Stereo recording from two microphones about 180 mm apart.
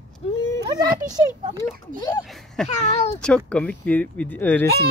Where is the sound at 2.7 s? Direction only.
40° left (ahead or behind).